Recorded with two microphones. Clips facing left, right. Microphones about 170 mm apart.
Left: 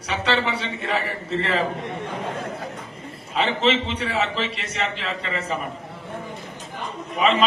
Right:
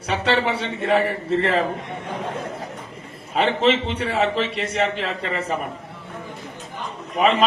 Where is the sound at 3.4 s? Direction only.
50° right (ahead or behind).